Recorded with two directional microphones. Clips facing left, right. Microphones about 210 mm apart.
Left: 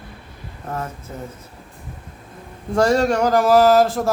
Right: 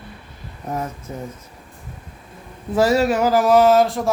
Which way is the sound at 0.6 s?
10° right (ahead or behind).